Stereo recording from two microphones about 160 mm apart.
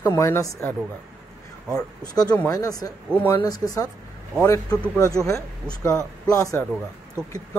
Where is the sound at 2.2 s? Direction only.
15° left (ahead or behind).